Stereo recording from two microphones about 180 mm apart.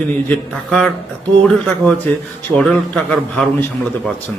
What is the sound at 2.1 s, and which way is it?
A man's voice, 5° left (ahead or behind).